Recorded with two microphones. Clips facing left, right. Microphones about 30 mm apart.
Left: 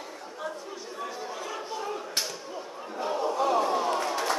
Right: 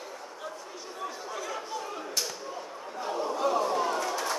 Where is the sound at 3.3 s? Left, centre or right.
Left.